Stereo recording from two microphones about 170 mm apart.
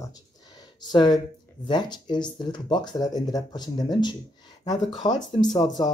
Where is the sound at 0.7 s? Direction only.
25° left (ahead or behind).